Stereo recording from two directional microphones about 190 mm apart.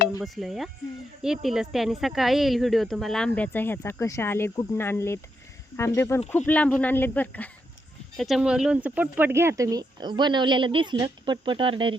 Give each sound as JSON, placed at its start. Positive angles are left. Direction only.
{"t": 0.3, "sound": "speech", "side_deg": 0}